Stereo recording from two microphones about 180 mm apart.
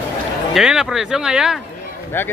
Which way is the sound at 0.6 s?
5° right (ahead or behind).